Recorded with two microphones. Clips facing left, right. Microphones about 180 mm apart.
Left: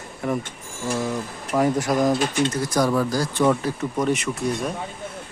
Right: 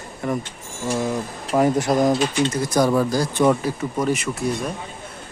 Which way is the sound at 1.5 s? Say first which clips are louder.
Right 2 dB; 25° right (ahead or behind).